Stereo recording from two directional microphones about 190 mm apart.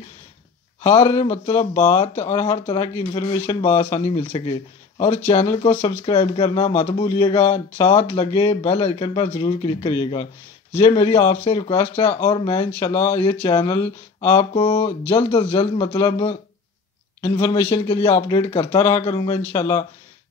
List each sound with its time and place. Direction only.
0.8 s speech: 30° left (ahead or behind)
12.9 s speech: 15° left (ahead or behind)
13.2 s speech: 25° left (ahead or behind)
17.6 s speech: 30° left (ahead or behind)